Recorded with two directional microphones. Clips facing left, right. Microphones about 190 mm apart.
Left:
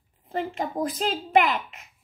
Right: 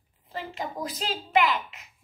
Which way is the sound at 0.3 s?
50° left (ahead or behind).